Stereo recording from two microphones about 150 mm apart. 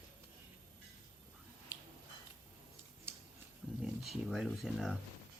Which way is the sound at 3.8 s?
Centre (ahead or behind).